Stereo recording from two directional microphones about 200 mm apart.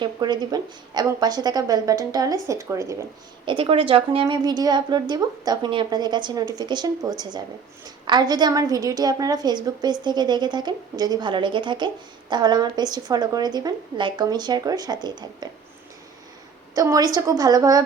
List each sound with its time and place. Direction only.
0.0 s a woman's voice: 20° right (ahead or behind)
3.4 s a woman's voice: 25° right (ahead or behind)
16.7 s a woman's voice: 15° right (ahead or behind)